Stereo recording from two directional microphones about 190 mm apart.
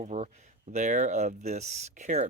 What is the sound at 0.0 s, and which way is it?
Speech, 40° right (ahead or behind).